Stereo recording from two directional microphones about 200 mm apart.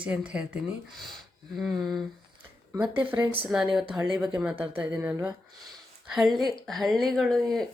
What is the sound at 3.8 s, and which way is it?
Speech, 20° right (ahead or behind).